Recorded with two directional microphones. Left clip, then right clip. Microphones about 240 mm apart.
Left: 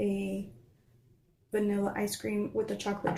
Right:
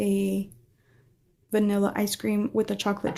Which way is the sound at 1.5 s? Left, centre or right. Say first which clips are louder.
Right 6 dB; right.